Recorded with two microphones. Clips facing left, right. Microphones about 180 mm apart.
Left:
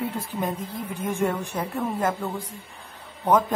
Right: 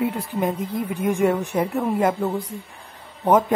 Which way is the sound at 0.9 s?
15° right (ahead or behind).